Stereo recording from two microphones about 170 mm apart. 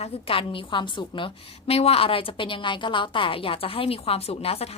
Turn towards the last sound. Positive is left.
turn(degrees=35)  # may be behind; listen again after turning